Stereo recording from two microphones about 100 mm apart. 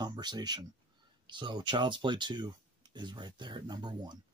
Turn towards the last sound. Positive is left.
turn(degrees=-45)  # may be behind; listen again after turning